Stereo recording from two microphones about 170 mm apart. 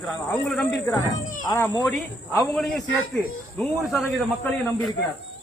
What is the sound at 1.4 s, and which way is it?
Speech, 25° left (ahead or behind).